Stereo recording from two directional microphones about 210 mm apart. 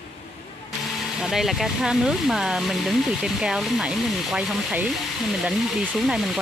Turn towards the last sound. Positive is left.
turn(degrees=0)  # may be behind; listen again after turning